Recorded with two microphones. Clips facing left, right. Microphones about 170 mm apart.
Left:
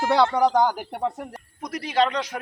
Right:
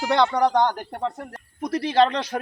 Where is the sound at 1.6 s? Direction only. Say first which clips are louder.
Right 4 dB; 30° right (ahead or behind).